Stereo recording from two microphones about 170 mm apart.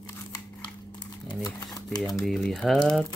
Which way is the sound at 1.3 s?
25° left (ahead or behind).